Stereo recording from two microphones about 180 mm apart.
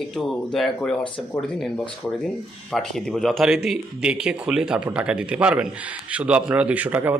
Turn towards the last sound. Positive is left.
turn(degrees=-10)  # may be behind; listen again after turning